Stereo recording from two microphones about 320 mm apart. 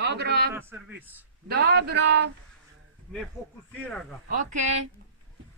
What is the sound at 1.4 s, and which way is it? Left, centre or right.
Speech, right.